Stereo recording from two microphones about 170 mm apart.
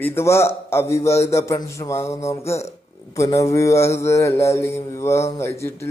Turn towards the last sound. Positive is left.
turn(degrees=15)  # may be behind; listen again after turning